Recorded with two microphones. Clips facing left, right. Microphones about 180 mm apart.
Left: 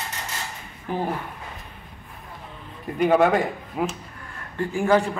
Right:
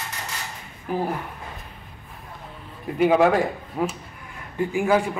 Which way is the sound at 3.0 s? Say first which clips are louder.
Right 1 dB; centre (ahead or behind).